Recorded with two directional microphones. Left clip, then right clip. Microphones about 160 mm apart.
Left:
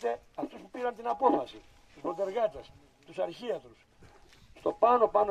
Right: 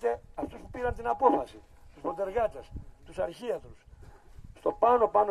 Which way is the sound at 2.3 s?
5° right (ahead or behind).